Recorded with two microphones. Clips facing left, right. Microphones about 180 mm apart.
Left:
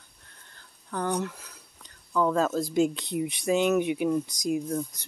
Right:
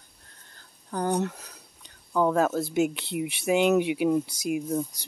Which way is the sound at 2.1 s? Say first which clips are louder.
Right 1 dB; 20° right (ahead or behind).